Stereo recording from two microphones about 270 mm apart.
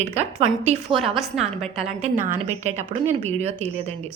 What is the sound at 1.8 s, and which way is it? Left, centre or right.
A woman's voice, right.